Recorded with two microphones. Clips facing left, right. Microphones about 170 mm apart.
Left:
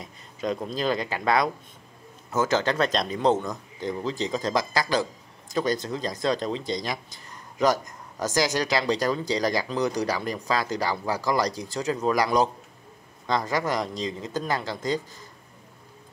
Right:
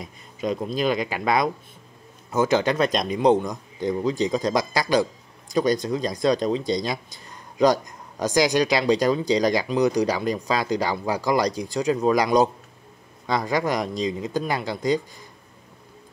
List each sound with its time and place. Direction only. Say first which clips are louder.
0.0 s speech: right 2 dB; 10° right (ahead or behind)